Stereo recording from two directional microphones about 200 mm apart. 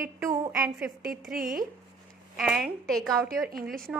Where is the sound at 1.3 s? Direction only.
45° right (ahead or behind).